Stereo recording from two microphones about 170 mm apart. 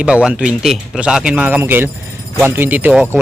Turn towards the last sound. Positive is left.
turn(degrees=-10)  # may be behind; listen again after turning